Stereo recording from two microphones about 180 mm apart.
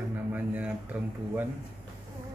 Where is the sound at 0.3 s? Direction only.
10° right (ahead or behind).